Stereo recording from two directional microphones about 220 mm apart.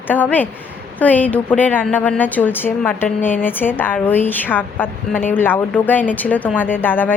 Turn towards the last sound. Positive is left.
turn(degrees=10)  # may be behind; listen again after turning